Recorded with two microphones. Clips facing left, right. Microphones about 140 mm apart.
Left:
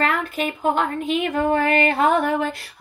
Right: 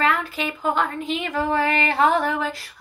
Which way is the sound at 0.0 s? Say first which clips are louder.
Left 1 dB; 50° left (ahead or behind).